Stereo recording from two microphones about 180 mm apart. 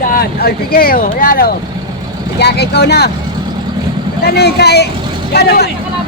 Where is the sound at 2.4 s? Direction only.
65° left (ahead or behind).